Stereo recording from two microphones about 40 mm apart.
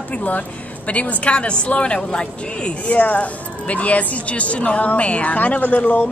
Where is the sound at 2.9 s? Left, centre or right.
Left.